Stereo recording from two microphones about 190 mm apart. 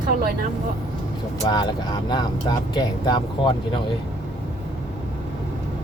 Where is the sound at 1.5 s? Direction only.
25° left (ahead or behind).